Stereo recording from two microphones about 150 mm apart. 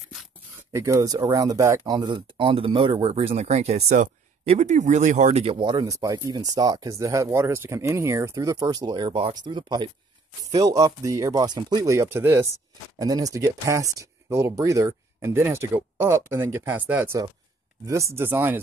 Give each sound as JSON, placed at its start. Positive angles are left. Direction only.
{"t": 0.7, "sound": "speech", "side_deg": -20}